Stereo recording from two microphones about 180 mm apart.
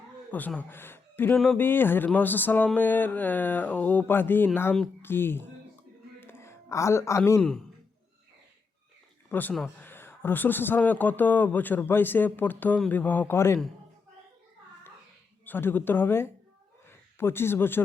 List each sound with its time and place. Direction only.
0.3 s a man's voice: 10° left (ahead or behind)
6.1 s a sound: 15° left (ahead or behind)
9.3 s a man's voice: 10° left (ahead or behind)
15.4 s a man's voice: 10° left (ahead or behind)